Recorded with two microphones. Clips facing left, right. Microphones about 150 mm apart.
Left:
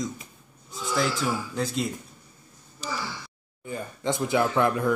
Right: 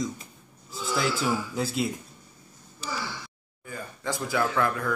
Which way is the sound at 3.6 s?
20° left (ahead or behind).